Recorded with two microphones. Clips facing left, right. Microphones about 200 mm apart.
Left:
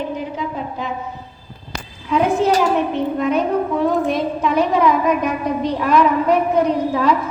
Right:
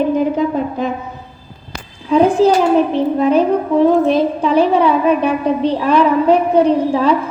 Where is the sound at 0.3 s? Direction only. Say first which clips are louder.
Right 9 dB; 50° right (ahead or behind).